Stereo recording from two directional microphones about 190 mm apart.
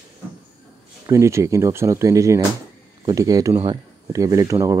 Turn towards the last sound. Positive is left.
turn(degrees=-15)  # may be behind; listen again after turning